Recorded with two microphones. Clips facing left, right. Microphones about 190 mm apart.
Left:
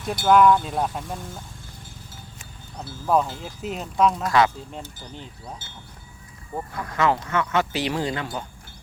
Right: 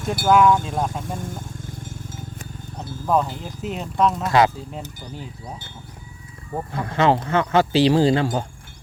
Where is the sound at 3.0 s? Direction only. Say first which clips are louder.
Right 1 dB; 5° left (ahead or behind).